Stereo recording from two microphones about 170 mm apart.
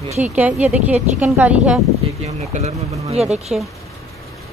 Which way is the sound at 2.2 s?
40° right (ahead or behind).